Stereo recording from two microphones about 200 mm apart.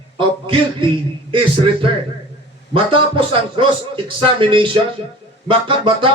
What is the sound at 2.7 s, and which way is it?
Speech, 25° right (ahead or behind).